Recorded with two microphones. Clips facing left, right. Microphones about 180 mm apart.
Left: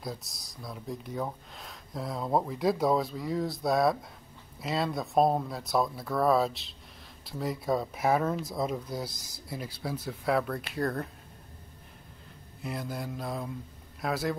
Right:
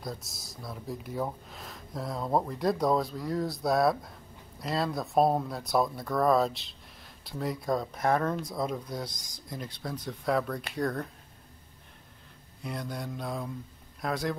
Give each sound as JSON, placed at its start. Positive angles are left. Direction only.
{"t": 0.0, "sound": "speech", "side_deg": 0}
{"t": 12.6, "sound": "speech", "side_deg": 5}